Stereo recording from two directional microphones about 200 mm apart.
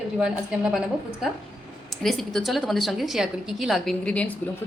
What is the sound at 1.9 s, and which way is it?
A woman's voice, centre (ahead or behind).